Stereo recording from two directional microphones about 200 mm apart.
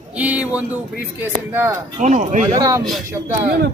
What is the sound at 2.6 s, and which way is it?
Speech, 15° right (ahead or behind).